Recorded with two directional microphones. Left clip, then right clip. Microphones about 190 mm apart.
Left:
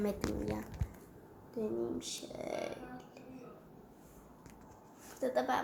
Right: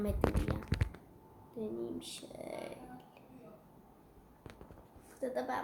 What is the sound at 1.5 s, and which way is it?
Speech, centre (ahead or behind).